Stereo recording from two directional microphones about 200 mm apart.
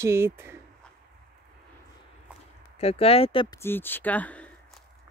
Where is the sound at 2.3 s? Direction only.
5° right (ahead or behind).